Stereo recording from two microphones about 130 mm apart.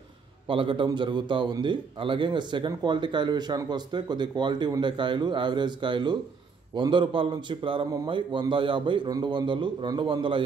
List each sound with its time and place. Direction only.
0.5 s a man's voice: 40° right (ahead or behind)